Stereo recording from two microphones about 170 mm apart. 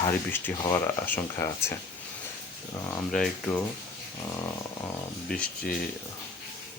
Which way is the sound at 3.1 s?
Centre (ahead or behind).